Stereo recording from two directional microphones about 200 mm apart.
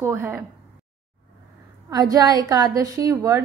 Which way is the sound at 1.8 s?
20° right (ahead or behind).